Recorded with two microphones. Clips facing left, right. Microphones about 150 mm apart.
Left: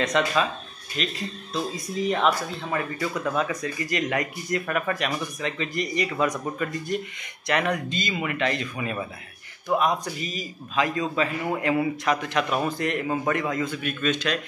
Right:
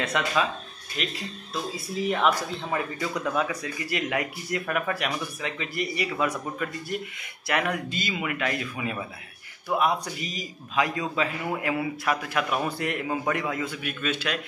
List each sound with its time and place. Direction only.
0.0 s speech: 5° right (ahead or behind)